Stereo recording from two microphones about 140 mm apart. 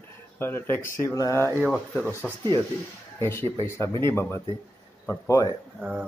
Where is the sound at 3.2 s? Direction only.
20° left (ahead or behind).